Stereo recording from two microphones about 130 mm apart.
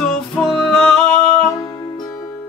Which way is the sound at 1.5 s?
25° left (ahead or behind).